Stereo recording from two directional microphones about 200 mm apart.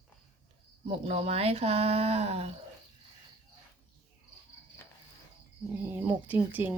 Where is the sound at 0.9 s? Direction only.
30° right (ahead or behind).